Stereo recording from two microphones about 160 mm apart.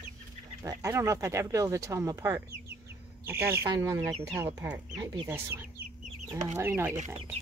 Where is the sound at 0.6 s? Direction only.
20° right (ahead or behind).